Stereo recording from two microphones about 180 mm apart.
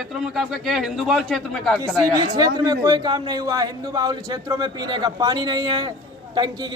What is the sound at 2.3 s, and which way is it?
A man's voice, 20° right (ahead or behind).